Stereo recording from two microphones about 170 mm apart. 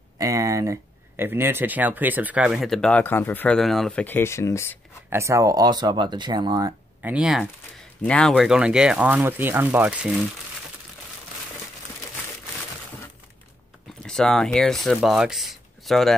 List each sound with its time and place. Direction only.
0.2 s speech: 20° right (ahead or behind); by 4.7 s 15° left (ahead or behind)
5.1 s speech: 15° right (ahead or behind)
7.0 s speech: 5° right (ahead or behind)
14.0 s speech: 5° left (ahead or behind)